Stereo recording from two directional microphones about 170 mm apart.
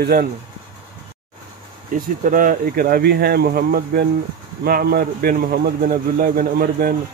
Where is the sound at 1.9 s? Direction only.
55° right (ahead or behind).